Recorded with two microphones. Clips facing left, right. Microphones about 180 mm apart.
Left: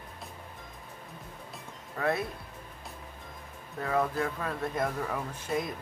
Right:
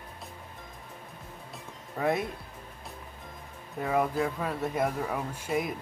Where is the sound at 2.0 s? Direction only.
15° right (ahead or behind).